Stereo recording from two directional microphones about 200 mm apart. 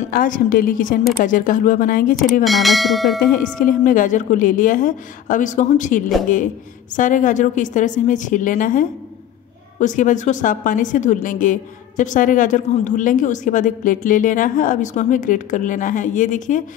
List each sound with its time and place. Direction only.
0.1 s a woman's voice: 45° left (ahead or behind)
2.4 s speech: centre (ahead or behind)
3.5 s a woman's voice: 40° left (ahead or behind)